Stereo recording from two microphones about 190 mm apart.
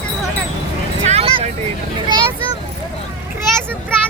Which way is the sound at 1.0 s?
30° right (ahead or behind).